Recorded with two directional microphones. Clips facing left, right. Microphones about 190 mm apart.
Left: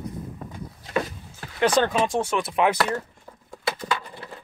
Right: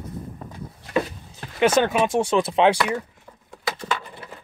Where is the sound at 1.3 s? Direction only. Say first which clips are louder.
Right 3 dB; 20° right (ahead or behind).